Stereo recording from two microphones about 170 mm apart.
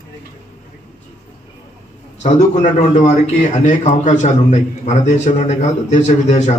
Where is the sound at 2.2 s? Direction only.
45° left (ahead or behind).